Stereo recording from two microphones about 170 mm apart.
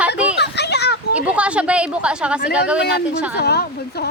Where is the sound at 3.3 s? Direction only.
70° left (ahead or behind).